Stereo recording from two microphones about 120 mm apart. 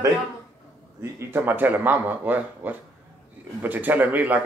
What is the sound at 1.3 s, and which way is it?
Speech, 15° right (ahead or behind).